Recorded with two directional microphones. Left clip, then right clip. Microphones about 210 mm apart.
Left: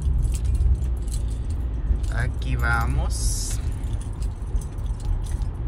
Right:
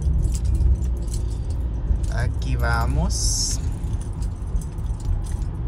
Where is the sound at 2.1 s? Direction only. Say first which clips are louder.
Even; 15° right (ahead or behind).